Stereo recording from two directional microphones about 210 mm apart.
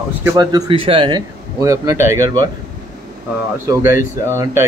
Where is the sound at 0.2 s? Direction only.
15° right (ahead or behind).